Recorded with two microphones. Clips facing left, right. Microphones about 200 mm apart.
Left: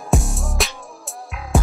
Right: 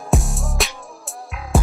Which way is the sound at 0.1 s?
Centre (ahead or behind).